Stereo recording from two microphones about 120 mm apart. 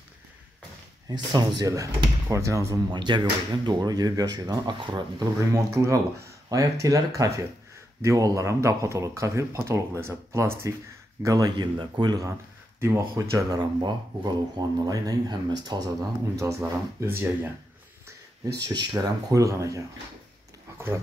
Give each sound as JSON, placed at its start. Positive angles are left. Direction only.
{"t": 1.0, "sound": "speech", "side_deg": -35}
{"t": 2.9, "sound": "speech", "side_deg": -40}
{"t": 11.2, "sound": "speech", "side_deg": -35}
{"t": 18.0, "sound": "speech", "side_deg": -30}